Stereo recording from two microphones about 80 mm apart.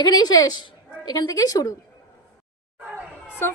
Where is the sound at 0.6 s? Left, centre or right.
Left.